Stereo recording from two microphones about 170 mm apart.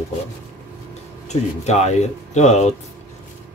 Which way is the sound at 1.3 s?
40° left (ahead or behind).